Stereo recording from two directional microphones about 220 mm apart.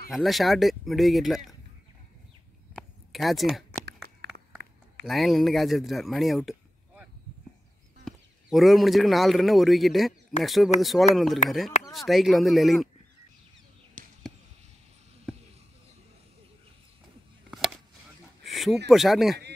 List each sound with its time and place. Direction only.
0.1 s speech: centre (ahead or behind)
2.7 s a sound: centre (ahead or behind)
5.0 s speech: centre (ahead or behind)
8.0 s speech: centre (ahead or behind)
14.0 s basketball bounce: 35° right (ahead or behind)
17.5 s a sound: centre (ahead or behind)
18.9 s speech: centre (ahead or behind)